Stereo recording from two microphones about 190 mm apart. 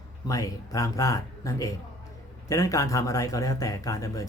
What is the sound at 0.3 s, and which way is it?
Speech, 20° left (ahead or behind).